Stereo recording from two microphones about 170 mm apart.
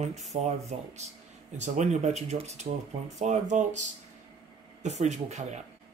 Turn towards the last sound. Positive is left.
turn(degrees=-45)  # may be behind; listen again after turning